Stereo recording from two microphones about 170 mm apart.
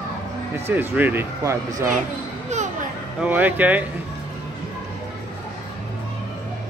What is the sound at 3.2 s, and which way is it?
Speech, 10° right (ahead or behind).